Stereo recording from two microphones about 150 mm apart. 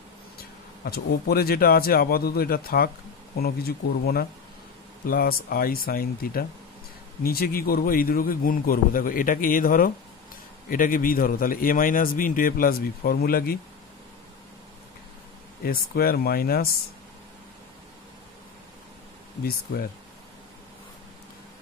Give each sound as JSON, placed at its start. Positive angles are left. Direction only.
{"t": 0.4, "sound": "speech", "side_deg": 90}
{"t": 5.0, "sound": "a man's voice", "side_deg": 75}
{"t": 15.6, "sound": "speech", "side_deg": 85}
{"t": 19.4, "sound": "speech", "side_deg": 90}